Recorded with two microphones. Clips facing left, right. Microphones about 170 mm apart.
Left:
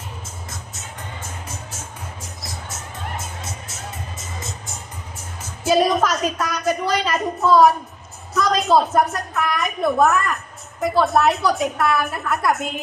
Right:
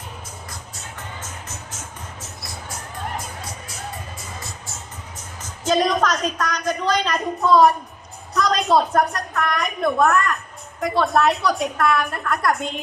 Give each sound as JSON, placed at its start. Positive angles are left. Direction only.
{"t": 3.2, "sound": "music", "side_deg": 25}
{"t": 5.4, "sound": "a woman's voice", "side_deg": 10}